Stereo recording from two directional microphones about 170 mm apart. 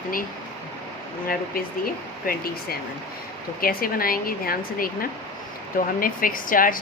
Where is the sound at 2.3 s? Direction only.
60° left (ahead or behind).